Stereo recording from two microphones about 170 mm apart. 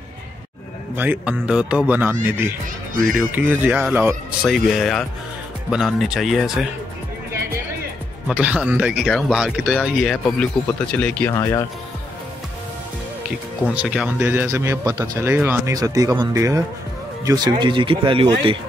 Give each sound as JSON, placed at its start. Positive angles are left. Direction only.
{"t": 0.9, "sound": "speech", "side_deg": -10}
{"t": 4.5, "sound": "speech", "side_deg": 0}
{"t": 8.3, "sound": "speech", "side_deg": -5}
{"t": 13.7, "sound": "speech", "side_deg": -5}